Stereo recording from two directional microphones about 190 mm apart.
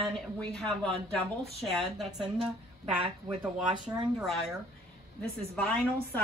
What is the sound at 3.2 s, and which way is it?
Speech, 25° right (ahead or behind).